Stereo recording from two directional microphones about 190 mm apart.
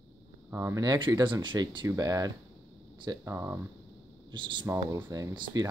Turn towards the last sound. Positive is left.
turn(degrees=-25)  # may be behind; listen again after turning